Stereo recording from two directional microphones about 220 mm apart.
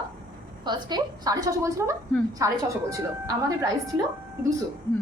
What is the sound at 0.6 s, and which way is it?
A woman's voice, 20° right (ahead or behind).